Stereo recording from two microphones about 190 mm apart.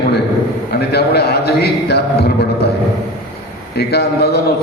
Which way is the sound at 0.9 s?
60° left (ahead or behind).